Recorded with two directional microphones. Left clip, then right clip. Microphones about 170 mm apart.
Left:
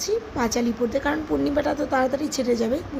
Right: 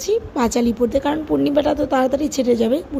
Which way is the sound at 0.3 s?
40° right (ahead or behind).